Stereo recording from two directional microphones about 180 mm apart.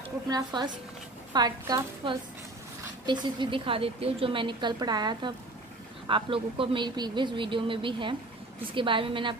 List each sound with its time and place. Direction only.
0.3 s speech: 20° right (ahead or behind)